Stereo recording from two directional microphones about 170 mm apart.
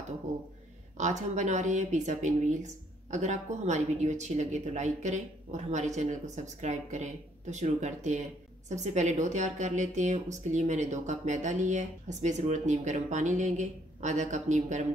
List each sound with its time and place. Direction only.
0.9 s speech: 45° right (ahead or behind)